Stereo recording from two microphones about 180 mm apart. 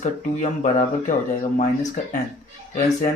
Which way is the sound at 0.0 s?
45° left (ahead or behind).